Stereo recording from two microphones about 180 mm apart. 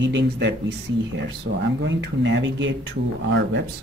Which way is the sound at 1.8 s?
75° right (ahead or behind).